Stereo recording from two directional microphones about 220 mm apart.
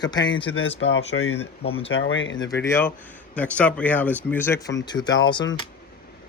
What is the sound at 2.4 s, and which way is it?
Speech, 15° left (ahead or behind).